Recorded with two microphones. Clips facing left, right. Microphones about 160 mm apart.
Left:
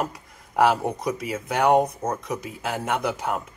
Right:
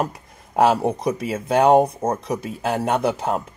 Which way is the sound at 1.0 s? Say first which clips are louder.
Right 4 dB; 25° right (ahead or behind).